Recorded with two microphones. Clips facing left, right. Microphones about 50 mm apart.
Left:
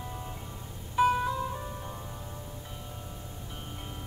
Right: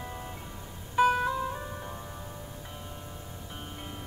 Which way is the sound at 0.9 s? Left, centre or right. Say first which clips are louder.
Right 1 dB; centre.